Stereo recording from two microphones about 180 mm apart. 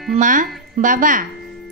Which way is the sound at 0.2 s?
45° right (ahead or behind).